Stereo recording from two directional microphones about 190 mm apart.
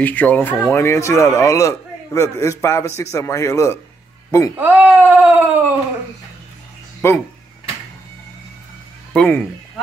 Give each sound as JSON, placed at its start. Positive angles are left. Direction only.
{"t": 0.0, "sound": "a man's voice", "side_deg": 10}
{"t": 4.6, "sound": "speech", "side_deg": -10}
{"t": 7.0, "sound": "a man's voice", "side_deg": 10}
{"t": 9.1, "sound": "speech", "side_deg": 5}